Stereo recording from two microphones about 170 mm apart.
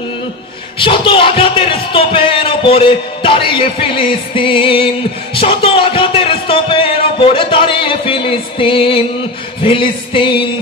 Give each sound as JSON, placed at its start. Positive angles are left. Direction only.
{"t": 0.7, "sound": "speech", "side_deg": 30}